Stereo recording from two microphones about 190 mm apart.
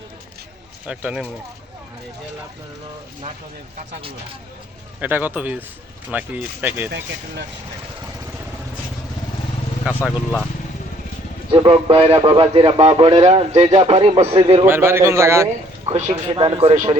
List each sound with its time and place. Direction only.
0.9 s speech: 5° right (ahead or behind)
4.9 s a man's voice: 10° right (ahead or behind)
11.5 s speech: 25° right (ahead or behind)
14.6 s a man's voice: 10° right (ahead or behind)
15.9 s speech: 35° right (ahead or behind)